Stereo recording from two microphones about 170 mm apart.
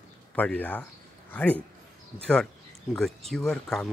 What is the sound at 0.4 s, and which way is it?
Speech, 10° left (ahead or behind).